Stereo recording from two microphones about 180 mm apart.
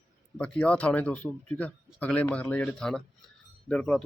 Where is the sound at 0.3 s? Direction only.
5° left (ahead or behind).